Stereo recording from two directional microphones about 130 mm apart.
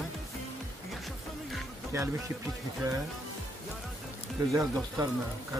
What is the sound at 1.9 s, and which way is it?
Speech, 25° right (ahead or behind).